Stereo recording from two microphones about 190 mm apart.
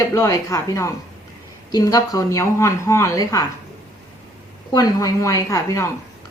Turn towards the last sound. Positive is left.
turn(degrees=15)  # may be behind; listen again after turning